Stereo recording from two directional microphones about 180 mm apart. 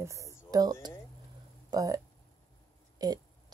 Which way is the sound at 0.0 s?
15° right (ahead or behind).